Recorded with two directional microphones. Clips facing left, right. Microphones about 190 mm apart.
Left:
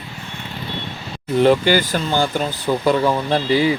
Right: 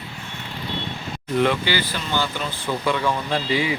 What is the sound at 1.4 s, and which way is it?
Speech, 40° left (ahead or behind).